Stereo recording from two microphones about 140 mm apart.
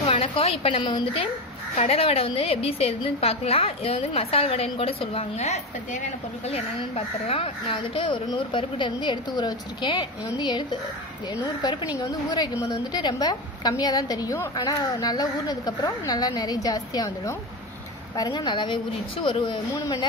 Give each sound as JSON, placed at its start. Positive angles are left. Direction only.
{"t": 0.0, "sound": "a woman's voice", "side_deg": 40}
{"t": 6.8, "sound": "a woman's voice", "side_deg": 45}